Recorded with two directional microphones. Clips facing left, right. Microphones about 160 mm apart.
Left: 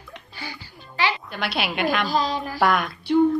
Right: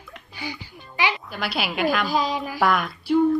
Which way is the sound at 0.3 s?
20° right (ahead or behind).